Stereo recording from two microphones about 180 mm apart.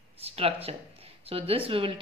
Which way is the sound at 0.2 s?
35° right (ahead or behind).